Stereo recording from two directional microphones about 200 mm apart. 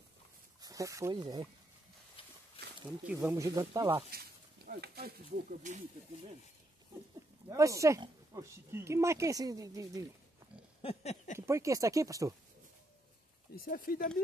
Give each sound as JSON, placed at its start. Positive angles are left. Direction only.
{"t": 0.6, "sound": "speech", "side_deg": -15}
{"t": 3.1, "sound": "speech", "side_deg": -10}
{"t": 4.6, "sound": "speech", "side_deg": -50}
{"t": 5.6, "sound": "speech", "side_deg": -35}
{"t": 7.4, "sound": "speech", "side_deg": -15}
{"t": 10.8, "sound": "a sound", "side_deg": 30}
{"t": 11.3, "sound": "speech", "side_deg": -15}
{"t": 13.6, "sound": "speech", "side_deg": 45}